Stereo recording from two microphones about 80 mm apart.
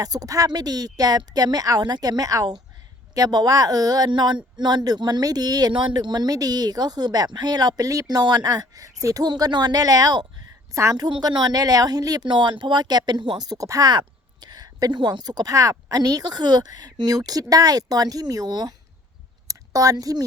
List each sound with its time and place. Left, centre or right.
0.0 s a woman's voice: right
5.7 s a woman's voice: right
9.3 s a woman's voice: right
19.5 s speech: right